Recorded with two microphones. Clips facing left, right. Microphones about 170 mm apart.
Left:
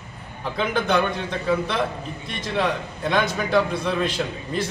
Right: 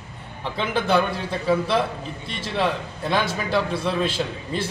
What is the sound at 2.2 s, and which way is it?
Speech, 30° right (ahead or behind).